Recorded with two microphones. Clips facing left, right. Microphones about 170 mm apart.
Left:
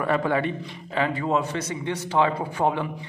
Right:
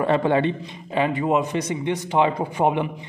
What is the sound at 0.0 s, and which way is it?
A man's voice, 25° right (ahead or behind).